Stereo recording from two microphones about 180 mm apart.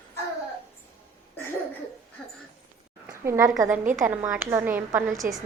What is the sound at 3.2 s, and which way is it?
A woman's voice, 15° right (ahead or behind).